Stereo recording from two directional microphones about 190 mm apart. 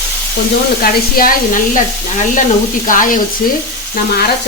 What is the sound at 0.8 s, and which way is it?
Speech, 50° left (ahead or behind).